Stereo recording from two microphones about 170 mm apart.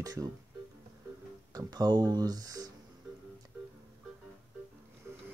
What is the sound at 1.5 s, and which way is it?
Speech, 20° right (ahead or behind).